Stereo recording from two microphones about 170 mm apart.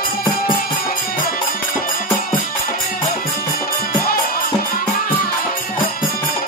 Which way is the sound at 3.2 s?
60° left (ahead or behind).